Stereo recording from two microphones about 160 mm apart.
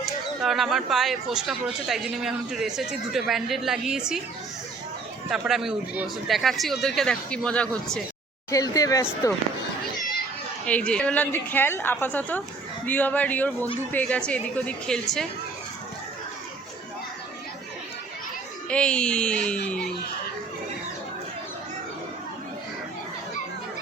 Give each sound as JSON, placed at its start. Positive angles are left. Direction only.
{"t": 0.0, "sound": "speech", "side_deg": 0}
{"t": 5.3, "sound": "speech", "side_deg": 0}
{"t": 8.4, "sound": "speech", "side_deg": 20}
{"t": 10.7, "sound": "a woman's voice", "side_deg": 5}
{"t": 18.7, "sound": "speech", "side_deg": 5}